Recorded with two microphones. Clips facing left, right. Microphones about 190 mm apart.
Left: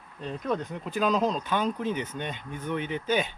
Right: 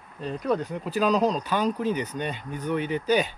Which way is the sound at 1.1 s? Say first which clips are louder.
Right 2 dB; 35° right (ahead or behind).